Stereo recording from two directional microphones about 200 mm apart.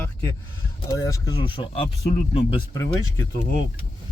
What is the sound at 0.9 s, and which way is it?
Speech, 15° left (ahead or behind).